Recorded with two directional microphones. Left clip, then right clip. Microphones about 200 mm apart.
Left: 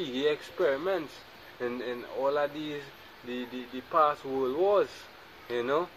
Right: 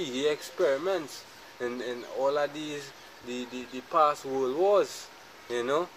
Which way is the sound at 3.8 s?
20° right (ahead or behind).